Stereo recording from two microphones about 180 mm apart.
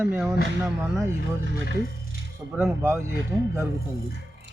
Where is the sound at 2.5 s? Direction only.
10° right (ahead or behind).